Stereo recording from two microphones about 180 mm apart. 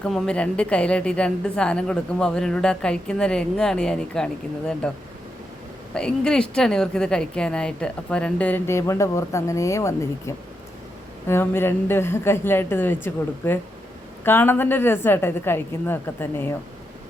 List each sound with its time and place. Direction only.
0.0 s a woman's voice: 5° left (ahead or behind)
5.9 s a woman's voice: 5° left (ahead or behind)